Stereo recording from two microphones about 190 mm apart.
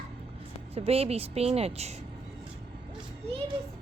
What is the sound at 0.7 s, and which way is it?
A woman's voice, 30° right (ahead or behind).